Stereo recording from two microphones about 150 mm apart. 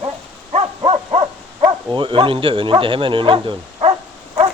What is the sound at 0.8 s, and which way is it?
Dog, 35° right (ahead or behind).